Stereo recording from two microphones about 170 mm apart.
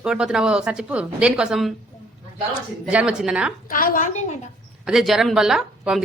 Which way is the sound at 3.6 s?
55° left (ahead or behind).